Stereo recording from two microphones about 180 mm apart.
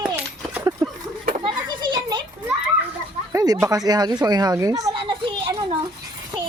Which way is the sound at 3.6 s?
20° right (ahead or behind).